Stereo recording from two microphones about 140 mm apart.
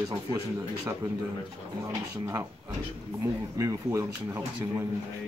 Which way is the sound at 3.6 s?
20° right (ahead or behind).